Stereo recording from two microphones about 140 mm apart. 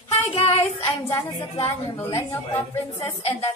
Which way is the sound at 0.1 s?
45° left (ahead or behind).